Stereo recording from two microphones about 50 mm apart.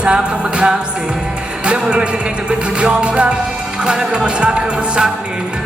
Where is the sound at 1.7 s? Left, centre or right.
Centre.